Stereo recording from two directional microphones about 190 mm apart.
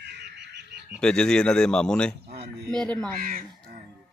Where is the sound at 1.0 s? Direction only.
5° left (ahead or behind).